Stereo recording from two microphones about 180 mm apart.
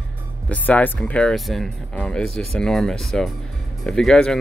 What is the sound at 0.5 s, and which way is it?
Speech, 10° left (ahead or behind).